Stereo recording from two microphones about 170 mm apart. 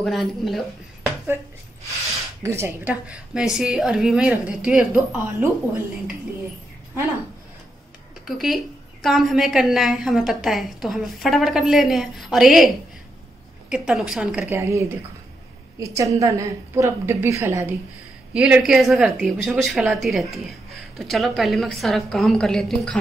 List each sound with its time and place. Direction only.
0.0 s a woman's voice: centre (ahead or behind)
2.4 s a woman's voice: 15° right (ahead or behind)
8.3 s a woman's voice: centre (ahead or behind)
14.5 s a woman's voice: 15° right (ahead or behind); by 22.9 s 5° left (ahead or behind)